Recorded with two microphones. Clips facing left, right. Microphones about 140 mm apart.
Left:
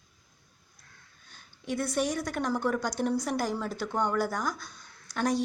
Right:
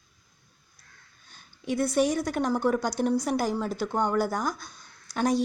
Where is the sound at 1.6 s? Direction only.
15° right (ahead or behind).